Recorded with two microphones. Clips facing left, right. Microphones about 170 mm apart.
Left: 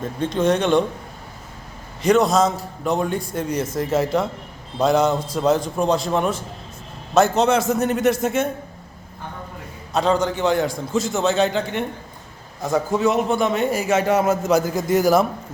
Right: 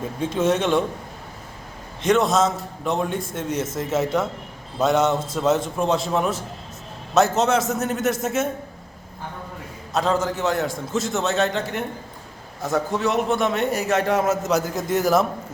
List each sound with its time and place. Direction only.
0.0 s a man's voice: 5° right (ahead or behind)
2.0 s a man's voice: centre (ahead or behind)
9.9 s a man's voice: centre (ahead or behind)